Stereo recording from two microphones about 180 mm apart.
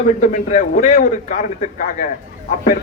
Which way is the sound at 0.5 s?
50° left (ahead or behind).